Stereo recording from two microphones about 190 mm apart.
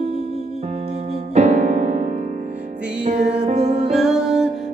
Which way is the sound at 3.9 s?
Centre (ahead or behind).